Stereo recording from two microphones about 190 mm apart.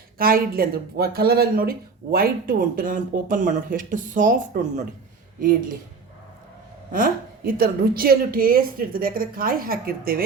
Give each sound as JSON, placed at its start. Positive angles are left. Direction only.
{"t": 0.2, "sound": "a woman's voice", "side_deg": -50}
{"t": 6.9, "sound": "a woman's voice", "side_deg": -50}